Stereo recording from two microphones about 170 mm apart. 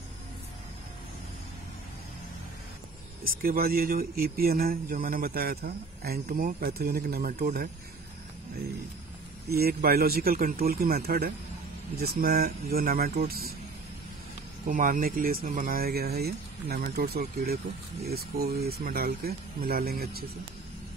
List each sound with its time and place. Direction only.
3.3 s speech: 60° right (ahead or behind)
9.5 s speech: 65° right (ahead or behind)
14.7 s speech: 50° right (ahead or behind)